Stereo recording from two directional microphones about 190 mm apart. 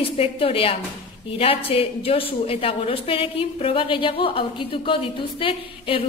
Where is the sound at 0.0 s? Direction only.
30° left (ahead or behind).